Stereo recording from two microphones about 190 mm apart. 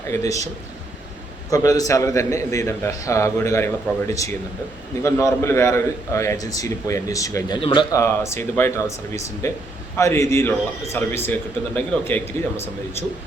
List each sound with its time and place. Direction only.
0.1 s a man's voice: 15° left (ahead or behind)
1.5 s a man's voice: 20° left (ahead or behind)